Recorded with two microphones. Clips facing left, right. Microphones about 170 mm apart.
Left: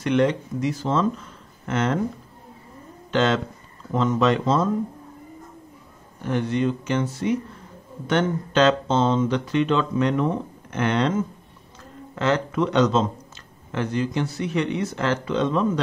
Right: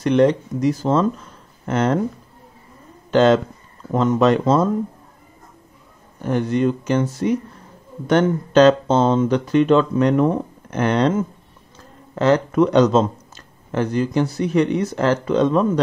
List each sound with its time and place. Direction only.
0.0 s speech: 40° right (ahead or behind)
3.1 s speech: 40° right (ahead or behind)
6.2 s speech: 45° right (ahead or behind)
12.2 s speech: 40° right (ahead or behind)